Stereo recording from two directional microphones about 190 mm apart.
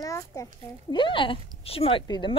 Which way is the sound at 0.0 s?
15° left (ahead or behind).